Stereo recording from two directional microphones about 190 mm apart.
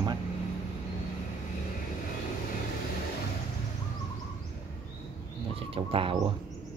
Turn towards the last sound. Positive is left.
turn(degrees=-30)  # may be behind; listen again after turning